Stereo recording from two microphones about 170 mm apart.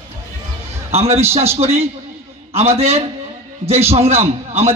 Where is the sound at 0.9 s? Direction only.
35° right (ahead or behind).